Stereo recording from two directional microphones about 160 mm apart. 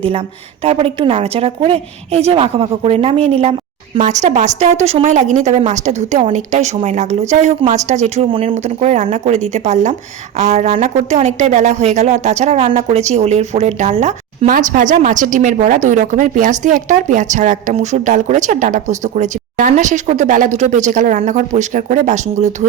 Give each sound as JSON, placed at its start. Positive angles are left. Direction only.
{"t": 0.6, "sound": "a woman's voice", "side_deg": -35}